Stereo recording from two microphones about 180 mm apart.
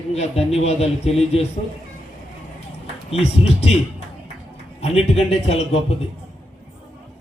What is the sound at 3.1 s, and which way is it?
A man's voice, 35° left (ahead or behind).